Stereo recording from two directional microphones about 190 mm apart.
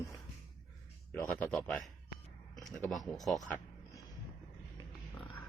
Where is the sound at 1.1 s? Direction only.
10° left (ahead or behind).